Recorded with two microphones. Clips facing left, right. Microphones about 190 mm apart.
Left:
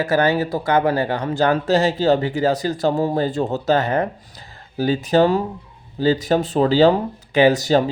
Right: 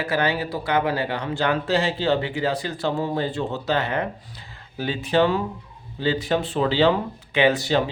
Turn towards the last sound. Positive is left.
turn(degrees=40)  # may be behind; listen again after turning